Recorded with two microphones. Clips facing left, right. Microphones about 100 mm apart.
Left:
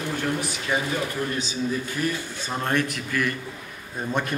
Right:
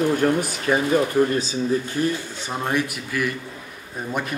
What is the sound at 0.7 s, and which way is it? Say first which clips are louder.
Speech: right 6 dB; 45° right (ahead or behind).